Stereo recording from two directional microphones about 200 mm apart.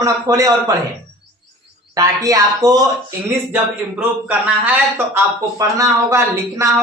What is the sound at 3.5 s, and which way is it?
Speech, 5° right (ahead or behind).